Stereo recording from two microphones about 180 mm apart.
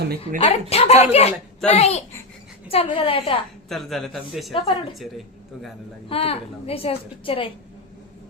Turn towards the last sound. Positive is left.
turn(degrees=30)  # may be behind; listen again after turning